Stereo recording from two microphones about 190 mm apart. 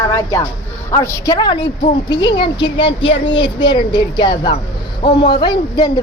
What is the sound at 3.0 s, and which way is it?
Speech, 80° left.